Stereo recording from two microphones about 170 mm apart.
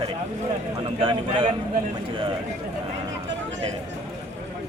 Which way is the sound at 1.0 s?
30° right (ahead or behind).